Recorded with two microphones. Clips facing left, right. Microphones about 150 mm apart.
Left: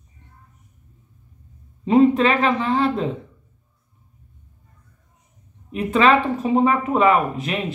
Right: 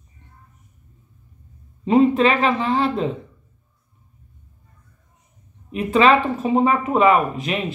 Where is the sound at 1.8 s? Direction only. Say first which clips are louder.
Even; 20° right (ahead or behind).